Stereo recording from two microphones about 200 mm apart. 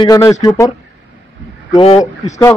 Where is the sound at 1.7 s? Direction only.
30° left (ahead or behind).